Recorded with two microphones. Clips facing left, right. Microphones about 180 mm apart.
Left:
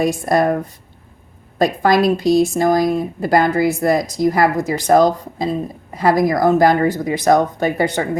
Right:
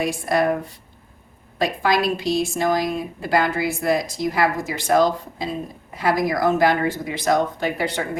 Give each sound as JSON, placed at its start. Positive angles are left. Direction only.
{"t": 0.0, "sound": "a woman's voice", "side_deg": 45}
{"t": 1.5, "sound": "speech", "side_deg": 45}